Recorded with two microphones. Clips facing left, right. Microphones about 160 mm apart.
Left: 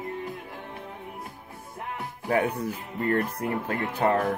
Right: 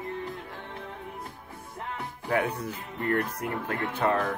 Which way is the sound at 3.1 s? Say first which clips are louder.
Left 2 dB; 30° left (ahead or behind).